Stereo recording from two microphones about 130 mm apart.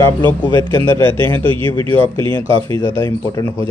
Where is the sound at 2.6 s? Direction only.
30° left (ahead or behind).